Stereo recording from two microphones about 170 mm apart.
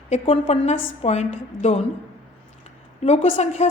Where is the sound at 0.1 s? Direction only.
40° left (ahead or behind).